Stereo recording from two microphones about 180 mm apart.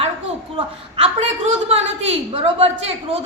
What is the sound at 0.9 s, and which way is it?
A woman's voice, 35° right (ahead or behind).